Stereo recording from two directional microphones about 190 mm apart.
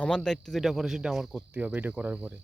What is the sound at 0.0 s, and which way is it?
Speech, 5° left (ahead or behind).